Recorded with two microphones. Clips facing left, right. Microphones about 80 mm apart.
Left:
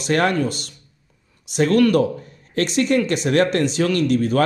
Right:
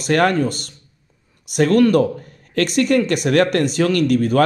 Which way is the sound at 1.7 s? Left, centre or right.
Right.